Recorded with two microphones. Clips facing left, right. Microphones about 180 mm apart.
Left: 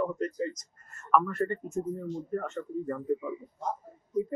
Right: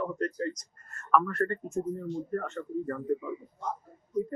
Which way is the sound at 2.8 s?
10° left (ahead or behind).